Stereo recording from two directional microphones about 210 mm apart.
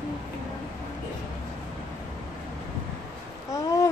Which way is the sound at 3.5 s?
15° left (ahead or behind).